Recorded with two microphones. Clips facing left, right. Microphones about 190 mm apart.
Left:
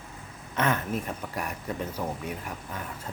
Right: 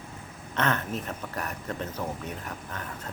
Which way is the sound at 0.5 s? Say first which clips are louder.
Left 1 dB; 10° left (ahead or behind).